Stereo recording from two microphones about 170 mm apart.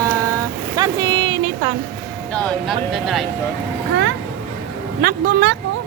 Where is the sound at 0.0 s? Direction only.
20° right (ahead or behind).